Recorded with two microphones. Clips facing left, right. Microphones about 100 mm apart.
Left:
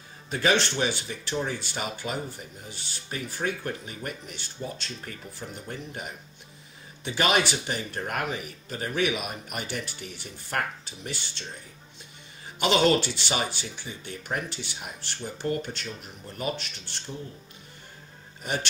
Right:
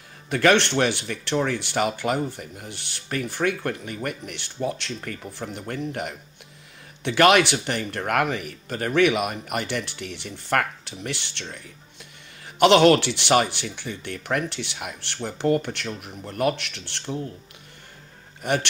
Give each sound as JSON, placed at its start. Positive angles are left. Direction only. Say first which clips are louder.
{"t": 0.3, "sound": "speech", "louder": "right 6 dB", "side_deg": -65}
{"t": 18.4, "sound": "speech", "louder": "right 6 dB", "side_deg": -60}